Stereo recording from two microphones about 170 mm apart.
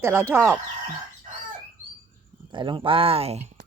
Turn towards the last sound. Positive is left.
turn(degrees=-35)  # may be behind; listen again after turning